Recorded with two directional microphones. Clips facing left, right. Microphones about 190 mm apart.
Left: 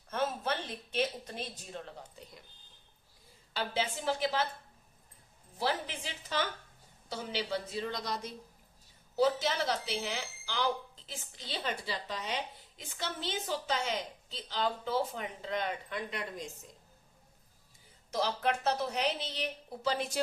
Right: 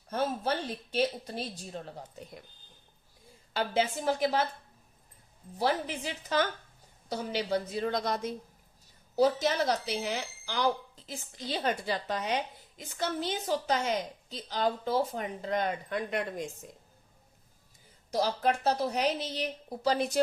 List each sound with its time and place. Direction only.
0.1 s speech: 35° right (ahead or behind)
3.5 s speech: 45° right (ahead or behind)
5.5 s speech: 45° right (ahead or behind)
18.1 s a woman's voice: 35° right (ahead or behind)